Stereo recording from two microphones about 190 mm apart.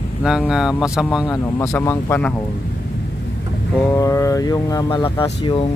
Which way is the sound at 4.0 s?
15° left (ahead or behind).